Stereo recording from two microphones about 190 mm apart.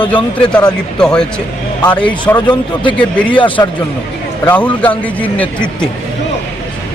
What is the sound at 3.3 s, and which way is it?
Speech, 25° left (ahead or behind).